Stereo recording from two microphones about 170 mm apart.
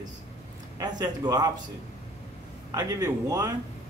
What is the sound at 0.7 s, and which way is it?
Speech, 25° right (ahead or behind).